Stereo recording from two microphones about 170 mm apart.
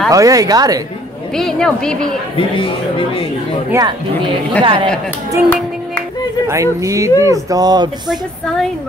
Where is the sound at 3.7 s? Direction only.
25° right (ahead or behind).